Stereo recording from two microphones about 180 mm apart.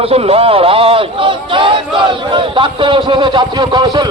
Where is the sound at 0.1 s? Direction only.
30° right (ahead or behind).